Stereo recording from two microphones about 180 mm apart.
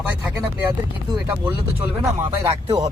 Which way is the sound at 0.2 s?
10° right (ahead or behind).